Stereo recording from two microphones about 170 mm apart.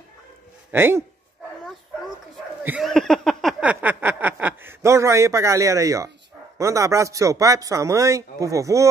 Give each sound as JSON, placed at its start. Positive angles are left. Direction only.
{"t": 0.7, "sound": "speech", "side_deg": -15}
{"t": 2.6, "sound": "speech", "side_deg": -10}
{"t": 2.9, "sound": "a sound", "side_deg": 5}
{"t": 3.6, "sound": "speech", "side_deg": -10}